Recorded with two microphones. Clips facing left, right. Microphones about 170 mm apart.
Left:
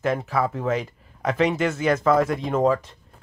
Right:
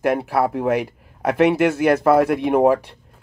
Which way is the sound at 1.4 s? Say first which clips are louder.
Right 6 dB; 60° right (ahead or behind).